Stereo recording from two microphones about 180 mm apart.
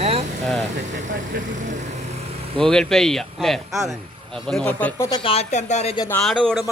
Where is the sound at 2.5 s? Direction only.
5° left (ahead or behind).